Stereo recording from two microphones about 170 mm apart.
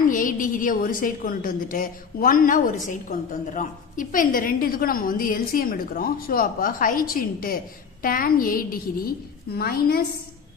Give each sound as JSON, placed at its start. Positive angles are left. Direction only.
{"t": 0.1, "sound": "a woman's voice", "side_deg": 50}